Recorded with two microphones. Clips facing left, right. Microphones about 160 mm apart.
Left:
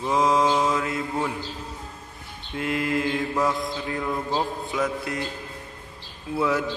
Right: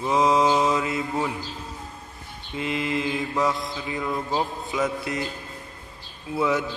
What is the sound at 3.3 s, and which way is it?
Mantra, 5° right (ahead or behind).